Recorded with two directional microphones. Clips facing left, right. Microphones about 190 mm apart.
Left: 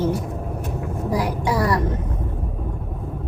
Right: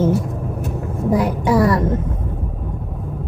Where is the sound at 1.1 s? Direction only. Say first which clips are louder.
Right 6 dB; 25° right (ahead or behind).